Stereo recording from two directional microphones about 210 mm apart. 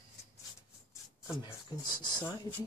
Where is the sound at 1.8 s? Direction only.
20° left (ahead or behind).